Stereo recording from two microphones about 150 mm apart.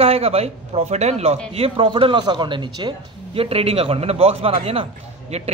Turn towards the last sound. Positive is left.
turn(degrees=-45)  # may be behind; listen again after turning